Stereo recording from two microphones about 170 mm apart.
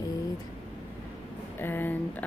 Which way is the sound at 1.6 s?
10° left (ahead or behind).